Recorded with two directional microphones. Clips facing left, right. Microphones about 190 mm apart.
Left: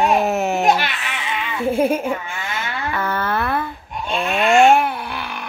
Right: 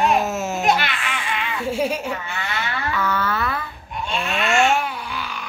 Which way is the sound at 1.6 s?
55° left (ahead or behind).